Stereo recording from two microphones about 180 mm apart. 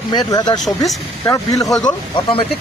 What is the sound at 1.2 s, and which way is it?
Speech, 20° left (ahead or behind).